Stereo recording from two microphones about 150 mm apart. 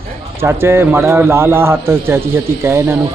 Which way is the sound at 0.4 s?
15° right (ahead or behind).